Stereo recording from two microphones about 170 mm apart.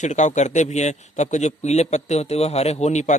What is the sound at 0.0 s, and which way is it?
A man's voice, 45° left (ahead or behind).